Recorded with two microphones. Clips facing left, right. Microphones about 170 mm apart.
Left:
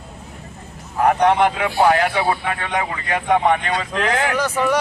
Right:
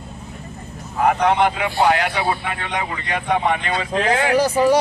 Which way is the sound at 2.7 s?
50° left (ahead or behind).